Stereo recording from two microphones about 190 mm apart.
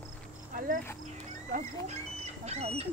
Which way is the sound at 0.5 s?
45° right (ahead or behind).